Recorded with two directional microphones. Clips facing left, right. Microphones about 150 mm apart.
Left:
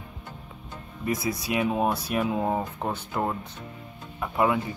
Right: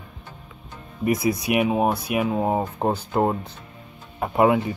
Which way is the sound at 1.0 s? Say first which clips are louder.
Right 7 dB; 20° right (ahead or behind).